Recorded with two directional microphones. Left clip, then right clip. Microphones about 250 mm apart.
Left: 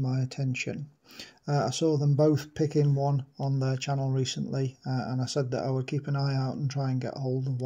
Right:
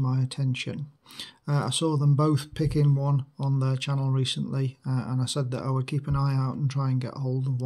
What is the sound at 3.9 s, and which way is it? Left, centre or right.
Speech, centre.